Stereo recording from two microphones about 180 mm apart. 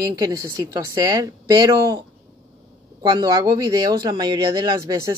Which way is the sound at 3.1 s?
20° right (ahead or behind).